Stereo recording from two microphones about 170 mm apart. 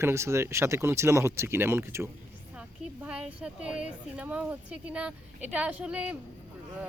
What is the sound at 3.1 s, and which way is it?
Speech, 5° right (ahead or behind).